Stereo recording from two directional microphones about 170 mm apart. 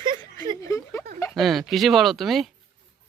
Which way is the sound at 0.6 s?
20° left (ahead or behind).